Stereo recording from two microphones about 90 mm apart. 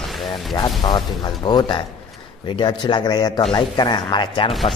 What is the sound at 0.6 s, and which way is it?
Speech, 55° left (ahead or behind).